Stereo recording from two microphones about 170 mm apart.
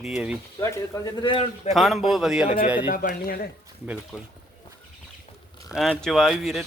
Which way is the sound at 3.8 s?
5° right (ahead or behind).